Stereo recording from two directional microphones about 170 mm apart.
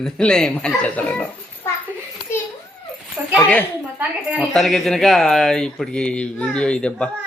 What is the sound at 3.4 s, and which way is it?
Speech, 10° left (ahead or behind).